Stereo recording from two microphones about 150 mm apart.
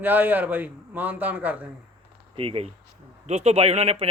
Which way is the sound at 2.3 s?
40° right (ahead or behind).